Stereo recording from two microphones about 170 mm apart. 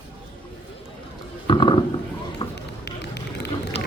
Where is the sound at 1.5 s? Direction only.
30° left (ahead or behind).